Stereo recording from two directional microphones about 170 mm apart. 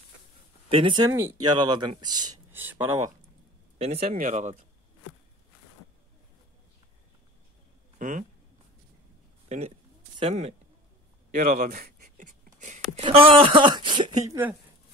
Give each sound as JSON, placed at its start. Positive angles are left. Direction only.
{"t": 0.7, "sound": "speech", "side_deg": -30}
{"t": 1.1, "sound": "speech", "side_deg": -20}
{"t": 2.5, "sound": "speech", "side_deg": -10}
{"t": 3.7, "sound": "speech", "side_deg": -35}
{"t": 4.1, "sound": "speech", "side_deg": -50}
{"t": 8.0, "sound": "speech", "side_deg": -50}
{"t": 10.1, "sound": "a man's voice", "side_deg": -40}
{"t": 11.3, "sound": "writing", "side_deg": -60}
{"t": 12.9, "sound": "speech", "side_deg": -35}